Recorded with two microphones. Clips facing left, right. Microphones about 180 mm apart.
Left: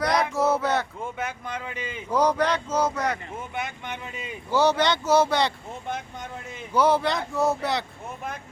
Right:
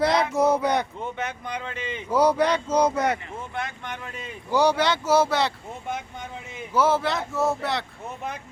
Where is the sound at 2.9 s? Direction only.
25° right (ahead or behind).